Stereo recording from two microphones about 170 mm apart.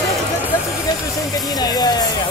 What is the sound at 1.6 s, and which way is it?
Speech, 25° left (ahead or behind).